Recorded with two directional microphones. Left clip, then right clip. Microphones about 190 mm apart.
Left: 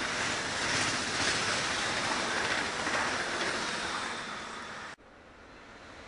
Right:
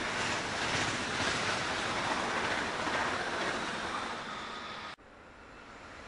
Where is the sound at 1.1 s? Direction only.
35° left (ahead or behind).